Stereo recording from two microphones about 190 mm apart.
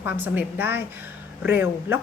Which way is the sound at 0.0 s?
10° right (ahead or behind).